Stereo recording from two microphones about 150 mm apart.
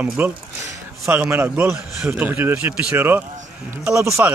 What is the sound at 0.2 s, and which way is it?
Speech, 10° right (ahead or behind).